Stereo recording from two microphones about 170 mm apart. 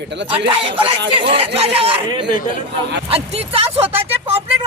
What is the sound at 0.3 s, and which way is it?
Speech, 30° right (ahead or behind).